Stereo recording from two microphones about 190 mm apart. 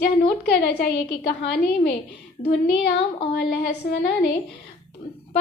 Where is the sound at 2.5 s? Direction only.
60° left (ahead or behind).